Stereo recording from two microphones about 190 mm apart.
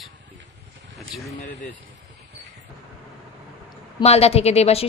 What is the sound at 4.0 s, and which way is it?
Speech, 35° left (ahead or behind).